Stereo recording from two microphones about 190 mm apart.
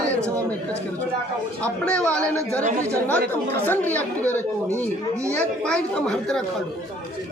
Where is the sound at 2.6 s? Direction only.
40° right (ahead or behind).